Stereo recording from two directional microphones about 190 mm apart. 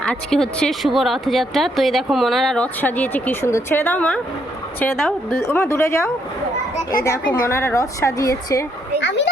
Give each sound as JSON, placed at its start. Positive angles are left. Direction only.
{"t": 0.0, "sound": "speech", "side_deg": 5}
{"t": 5.5, "sound": "a woman's voice", "side_deg": 15}
{"t": 9.0, "sound": "a child's voice", "side_deg": 70}